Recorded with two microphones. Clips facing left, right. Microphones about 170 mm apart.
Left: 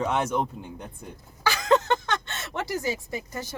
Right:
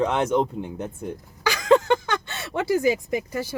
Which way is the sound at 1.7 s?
10° right (ahead or behind).